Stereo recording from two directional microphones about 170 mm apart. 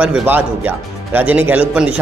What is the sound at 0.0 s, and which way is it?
A man's voice, 10° right (ahead or behind).